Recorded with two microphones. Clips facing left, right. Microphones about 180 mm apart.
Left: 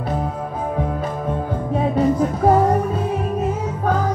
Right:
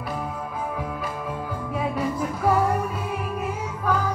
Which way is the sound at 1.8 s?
25° left (ahead or behind).